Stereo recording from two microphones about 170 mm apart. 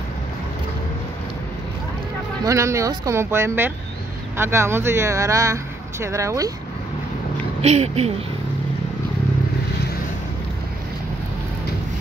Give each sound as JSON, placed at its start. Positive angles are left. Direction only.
{"t": 2.4, "sound": "speech", "side_deg": -15}
{"t": 7.6, "sound": "speech", "side_deg": -40}